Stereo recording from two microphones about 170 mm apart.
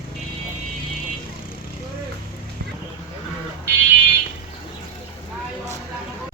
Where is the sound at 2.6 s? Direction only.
75° right (ahead or behind).